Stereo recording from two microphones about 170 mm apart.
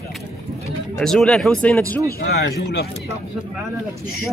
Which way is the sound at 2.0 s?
65° left (ahead or behind).